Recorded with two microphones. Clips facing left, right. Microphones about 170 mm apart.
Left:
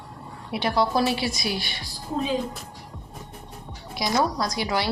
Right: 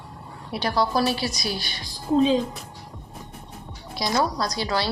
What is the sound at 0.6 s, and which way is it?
Speech, 25° left (ahead or behind).